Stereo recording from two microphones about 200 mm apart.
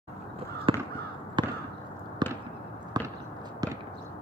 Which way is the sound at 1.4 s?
25° right (ahead or behind).